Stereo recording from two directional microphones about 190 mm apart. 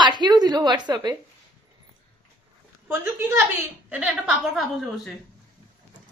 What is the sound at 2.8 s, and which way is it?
A woman's voice, 10° right (ahead or behind).